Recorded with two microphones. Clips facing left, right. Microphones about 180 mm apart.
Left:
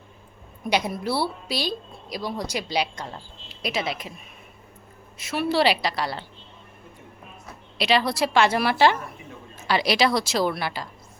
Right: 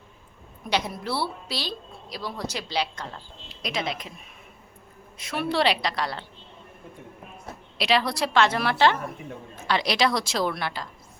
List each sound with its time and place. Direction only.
0.7 s a woman's voice: 10° left (ahead or behind)
5.1 s a woman's voice: 5° left (ahead or behind)
7.8 s a woman's voice: centre (ahead or behind)